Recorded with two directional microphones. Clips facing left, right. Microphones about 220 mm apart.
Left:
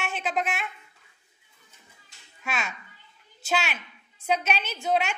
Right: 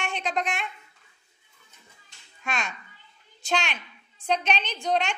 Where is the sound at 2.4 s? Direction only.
5° left (ahead or behind).